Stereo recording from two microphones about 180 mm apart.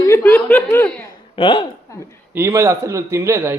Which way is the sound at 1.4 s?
30° left (ahead or behind).